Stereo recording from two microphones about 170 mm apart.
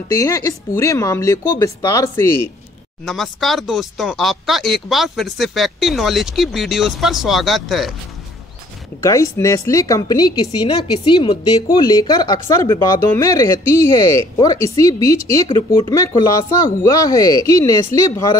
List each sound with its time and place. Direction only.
0.1 s a woman's voice: 20° left (ahead or behind)
3.1 s speech: centre (ahead or behind)
9.0 s a woman's voice: 20° left (ahead or behind)